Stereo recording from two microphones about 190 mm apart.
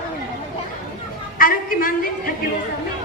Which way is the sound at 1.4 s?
50° left (ahead or behind).